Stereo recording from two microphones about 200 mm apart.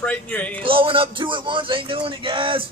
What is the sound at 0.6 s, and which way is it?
Speech, 25° right (ahead or behind).